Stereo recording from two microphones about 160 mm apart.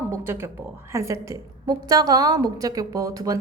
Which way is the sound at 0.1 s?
15° right (ahead or behind).